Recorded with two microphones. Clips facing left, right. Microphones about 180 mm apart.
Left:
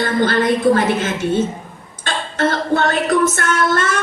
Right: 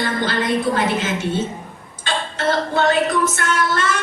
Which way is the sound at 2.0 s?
50° left (ahead or behind).